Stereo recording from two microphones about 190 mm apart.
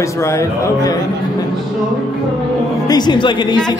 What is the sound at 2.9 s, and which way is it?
Speech, 20° left (ahead or behind).